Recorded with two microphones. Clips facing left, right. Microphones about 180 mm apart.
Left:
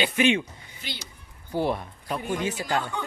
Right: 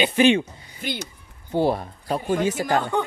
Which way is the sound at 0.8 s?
50° right (ahead or behind).